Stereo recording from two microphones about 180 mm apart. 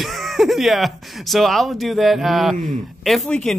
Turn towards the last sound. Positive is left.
turn(degrees=0)  # may be behind; listen again after turning